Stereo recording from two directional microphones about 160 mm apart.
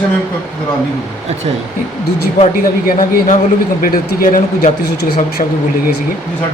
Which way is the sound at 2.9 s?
60° left (ahead or behind).